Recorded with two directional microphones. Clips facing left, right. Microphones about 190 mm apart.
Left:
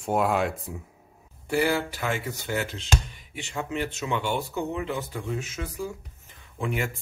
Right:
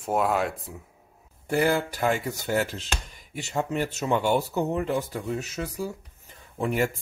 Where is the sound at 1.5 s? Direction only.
45° right (ahead or behind).